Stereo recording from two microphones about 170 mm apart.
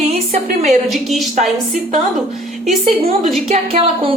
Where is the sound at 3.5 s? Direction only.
35° right (ahead or behind).